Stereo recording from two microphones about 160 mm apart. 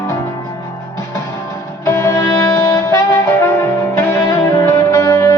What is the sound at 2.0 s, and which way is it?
Music, 15° left (ahead or behind).